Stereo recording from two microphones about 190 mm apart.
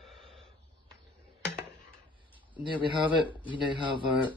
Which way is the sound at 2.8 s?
25° right (ahead or behind).